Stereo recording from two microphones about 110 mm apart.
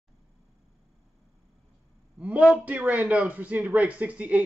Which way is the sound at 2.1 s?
10° right (ahead or behind).